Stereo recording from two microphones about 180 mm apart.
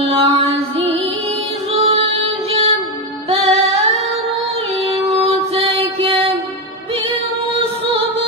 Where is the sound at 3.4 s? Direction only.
35° right (ahead or behind).